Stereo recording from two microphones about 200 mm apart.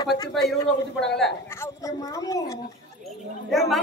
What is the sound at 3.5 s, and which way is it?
Speech, centre (ahead or behind).